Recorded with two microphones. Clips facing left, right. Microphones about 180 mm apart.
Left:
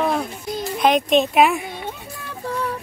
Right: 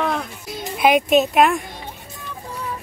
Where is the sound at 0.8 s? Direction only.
10° right (ahead or behind).